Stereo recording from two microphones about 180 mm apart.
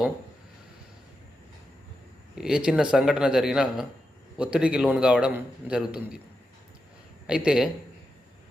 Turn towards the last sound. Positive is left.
turn(degrees=-5)  # may be behind; listen again after turning